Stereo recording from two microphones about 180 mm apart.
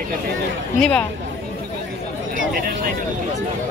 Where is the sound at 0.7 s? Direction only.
5° left (ahead or behind).